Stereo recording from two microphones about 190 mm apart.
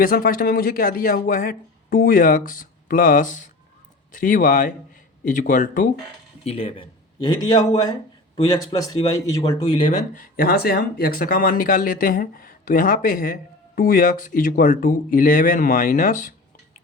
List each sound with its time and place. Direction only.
0.0 s speech: 50° left (ahead or behind)
6.4 s speech: 30° left (ahead or behind)
10.2 s speech: 50° left (ahead or behind)